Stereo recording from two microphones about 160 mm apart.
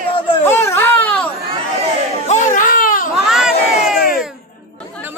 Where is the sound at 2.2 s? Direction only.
50° left (ahead or behind).